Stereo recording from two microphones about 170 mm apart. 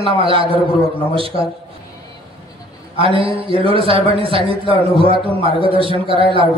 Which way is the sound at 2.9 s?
30° right (ahead or behind).